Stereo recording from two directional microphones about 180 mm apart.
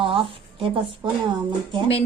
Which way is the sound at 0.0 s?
30° right (ahead or behind).